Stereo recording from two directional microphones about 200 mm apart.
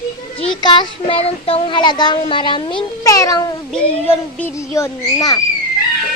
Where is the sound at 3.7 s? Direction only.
5° left (ahead or behind).